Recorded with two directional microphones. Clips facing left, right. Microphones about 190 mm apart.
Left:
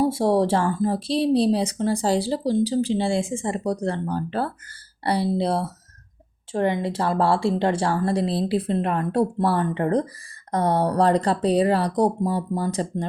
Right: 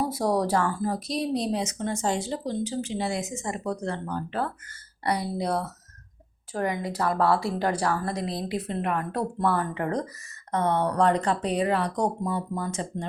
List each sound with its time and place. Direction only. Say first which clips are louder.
0.0 s a woman's voice: left 5 dB; 25° left (ahead or behind)